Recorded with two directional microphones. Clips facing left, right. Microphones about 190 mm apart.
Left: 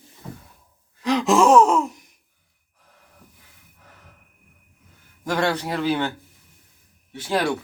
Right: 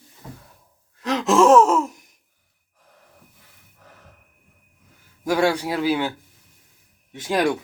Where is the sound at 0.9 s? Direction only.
Centre (ahead or behind).